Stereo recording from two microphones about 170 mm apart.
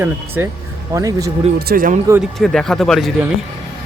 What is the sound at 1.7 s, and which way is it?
Speech, 55° right (ahead or behind).